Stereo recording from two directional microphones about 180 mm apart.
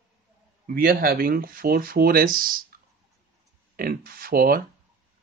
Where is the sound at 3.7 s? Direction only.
55° right (ahead or behind).